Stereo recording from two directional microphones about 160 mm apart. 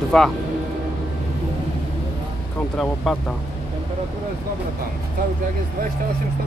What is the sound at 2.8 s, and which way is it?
Speech, 5° left (ahead or behind).